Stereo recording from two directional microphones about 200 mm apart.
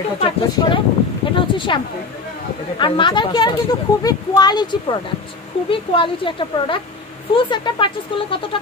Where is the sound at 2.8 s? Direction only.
25° left (ahead or behind).